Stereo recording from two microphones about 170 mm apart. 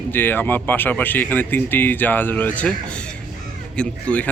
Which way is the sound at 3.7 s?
5° left (ahead or behind).